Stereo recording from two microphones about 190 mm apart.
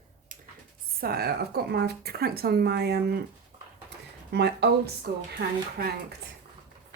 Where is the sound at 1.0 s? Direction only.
55° right (ahead or behind).